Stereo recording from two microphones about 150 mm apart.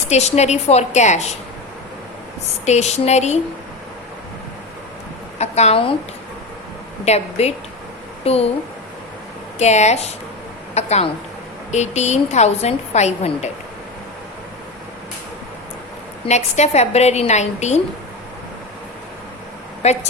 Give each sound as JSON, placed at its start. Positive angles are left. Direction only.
{"t": 0.1, "sound": "a woman's voice", "side_deg": 45}
{"t": 2.6, "sound": "a woman's voice", "side_deg": 50}
{"t": 5.4, "sound": "a woman's voice", "side_deg": 45}
{"t": 7.0, "sound": "a woman's voice", "side_deg": 45}
{"t": 9.6, "sound": "a woman's voice", "side_deg": 50}
{"t": 16.2, "sound": "a woman's voice", "side_deg": 45}
{"t": 19.8, "sound": "a woman's voice", "side_deg": 45}